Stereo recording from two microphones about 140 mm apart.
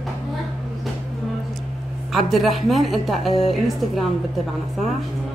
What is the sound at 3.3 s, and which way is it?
Speech, 40° left (ahead or behind).